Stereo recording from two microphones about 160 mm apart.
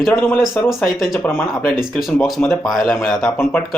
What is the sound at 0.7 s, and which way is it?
Speech, centre (ahead or behind).